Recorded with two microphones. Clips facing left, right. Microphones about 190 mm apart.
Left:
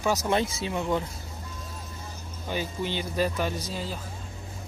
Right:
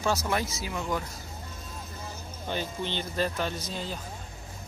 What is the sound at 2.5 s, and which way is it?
Speech, 10° left (ahead or behind).